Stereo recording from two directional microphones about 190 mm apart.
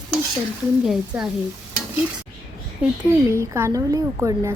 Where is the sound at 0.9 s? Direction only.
5° right (ahead or behind).